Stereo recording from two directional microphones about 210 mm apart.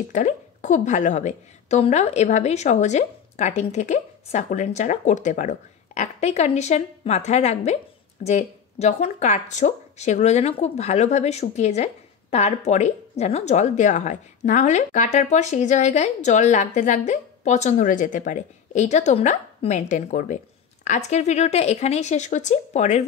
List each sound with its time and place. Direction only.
0.1 s speech: 35° left (ahead or behind)